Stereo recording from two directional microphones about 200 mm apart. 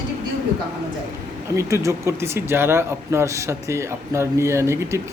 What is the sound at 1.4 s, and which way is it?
Speech, 15° right (ahead or behind).